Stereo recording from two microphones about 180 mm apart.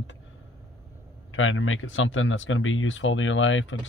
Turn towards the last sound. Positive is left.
turn(degrees=90)